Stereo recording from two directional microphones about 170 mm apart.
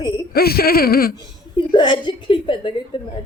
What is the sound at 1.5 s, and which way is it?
A woman's voice, 30° left (ahead or behind).